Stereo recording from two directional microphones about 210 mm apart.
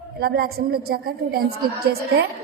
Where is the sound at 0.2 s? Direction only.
45° right (ahead or behind).